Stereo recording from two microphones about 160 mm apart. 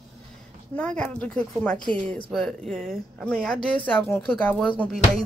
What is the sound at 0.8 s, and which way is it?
Speech, 10° left (ahead or behind).